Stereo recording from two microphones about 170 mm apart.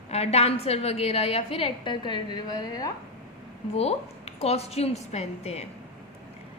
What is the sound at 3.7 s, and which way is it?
A woman's voice, 35° left (ahead or behind).